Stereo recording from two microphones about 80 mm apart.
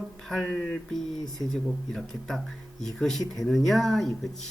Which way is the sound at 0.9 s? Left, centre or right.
Centre.